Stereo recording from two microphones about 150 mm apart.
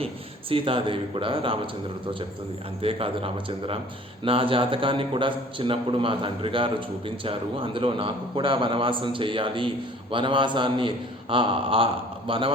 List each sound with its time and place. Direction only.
0.5 s a man's voice: 35° right (ahead or behind)
2.8 s a man's voice: 40° right (ahead or behind)